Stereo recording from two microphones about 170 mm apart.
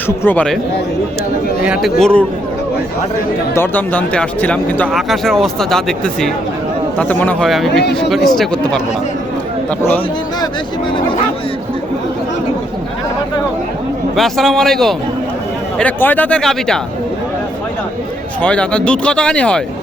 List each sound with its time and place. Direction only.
0.1 s speech: 10° left (ahead or behind)
1.6 s speech: 5° right (ahead or behind)
3.5 s speech: 10° left (ahead or behind)
7.8 s speech: 80° left
8.1 s speech: centre (ahead or behind)
14.2 s speech: centre (ahead or behind)
18.4 s speech: 5° left (ahead or behind)